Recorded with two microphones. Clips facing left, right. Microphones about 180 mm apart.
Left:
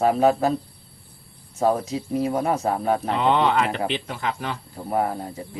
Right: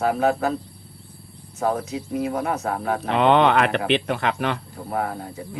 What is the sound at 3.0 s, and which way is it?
Speech, 70° right (ahead or behind).